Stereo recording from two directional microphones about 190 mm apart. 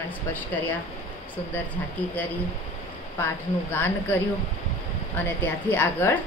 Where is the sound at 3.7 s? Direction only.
10° left (ahead or behind).